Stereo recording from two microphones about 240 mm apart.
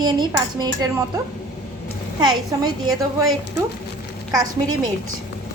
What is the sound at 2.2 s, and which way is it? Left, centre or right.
A woman's voice, centre.